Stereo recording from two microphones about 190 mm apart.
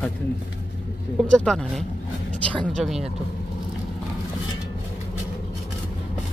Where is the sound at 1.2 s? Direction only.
5° left (ahead or behind).